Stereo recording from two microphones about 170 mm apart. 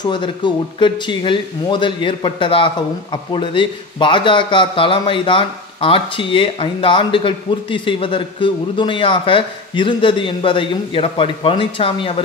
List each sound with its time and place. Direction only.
0.0 s speech: 30° left (ahead or behind)